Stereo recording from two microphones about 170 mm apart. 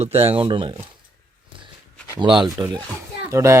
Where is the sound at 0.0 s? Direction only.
35° right (ahead or behind).